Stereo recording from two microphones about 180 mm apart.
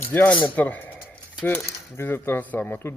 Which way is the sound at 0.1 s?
5° left (ahead or behind).